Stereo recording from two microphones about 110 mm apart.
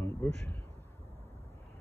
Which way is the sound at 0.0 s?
25° left (ahead or behind).